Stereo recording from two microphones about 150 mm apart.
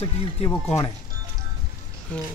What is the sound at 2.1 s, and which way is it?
Speech, 5° left (ahead or behind).